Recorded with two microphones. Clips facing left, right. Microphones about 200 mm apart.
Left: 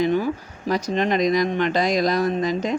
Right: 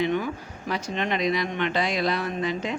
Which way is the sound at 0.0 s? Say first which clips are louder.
Left 4 dB; 35° left (ahead or behind).